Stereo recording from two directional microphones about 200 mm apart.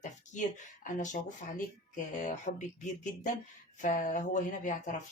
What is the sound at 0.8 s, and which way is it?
Speech, 40° left (ahead or behind).